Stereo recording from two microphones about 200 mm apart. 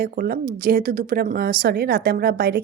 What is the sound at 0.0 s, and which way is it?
A woman's voice, 45° right (ahead or behind).